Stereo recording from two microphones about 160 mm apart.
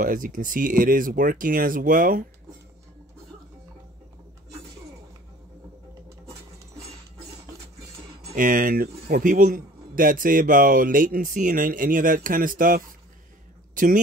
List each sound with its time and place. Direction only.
0.0 s a man's voice: 55° right (ahead or behind)
8.4 s a man's voice: 60° right (ahead or behind)